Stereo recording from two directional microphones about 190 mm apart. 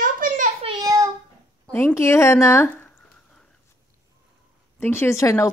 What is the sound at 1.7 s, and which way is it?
A woman's voice, 10° left (ahead or behind).